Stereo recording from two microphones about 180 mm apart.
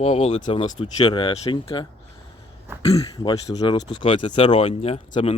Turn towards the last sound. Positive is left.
turn(degrees=35)  # may be behind; listen again after turning